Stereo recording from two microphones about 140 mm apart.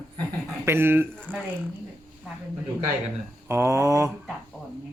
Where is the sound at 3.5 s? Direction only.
20° right (ahead or behind).